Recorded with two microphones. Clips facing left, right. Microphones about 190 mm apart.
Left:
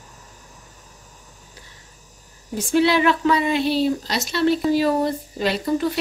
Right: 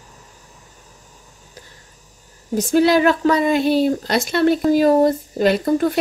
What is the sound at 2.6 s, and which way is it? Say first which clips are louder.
Speech: right 3 dB; 40° right (ahead or behind).